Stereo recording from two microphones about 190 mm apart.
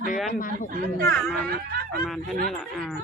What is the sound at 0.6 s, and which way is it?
Speech, 50° right (ahead or behind).